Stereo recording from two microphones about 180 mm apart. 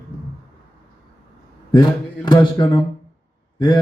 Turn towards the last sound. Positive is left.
turn(degrees=20)  # may be behind; listen again after turning